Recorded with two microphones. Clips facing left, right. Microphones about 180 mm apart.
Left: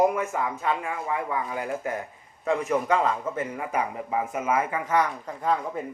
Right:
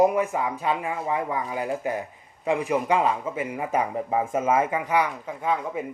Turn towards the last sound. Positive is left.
turn(degrees=-5)  # may be behind; listen again after turning